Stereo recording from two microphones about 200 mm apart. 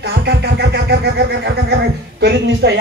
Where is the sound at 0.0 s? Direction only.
55° right (ahead or behind).